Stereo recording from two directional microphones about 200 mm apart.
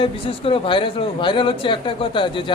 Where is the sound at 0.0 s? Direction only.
25° left (ahead or behind).